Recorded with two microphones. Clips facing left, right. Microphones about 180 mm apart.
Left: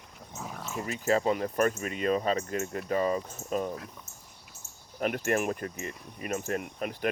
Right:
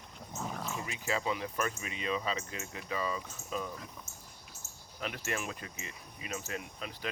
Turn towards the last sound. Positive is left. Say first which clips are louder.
# left 8 dB
turn(degrees=50)  # may be behind; listen again after turning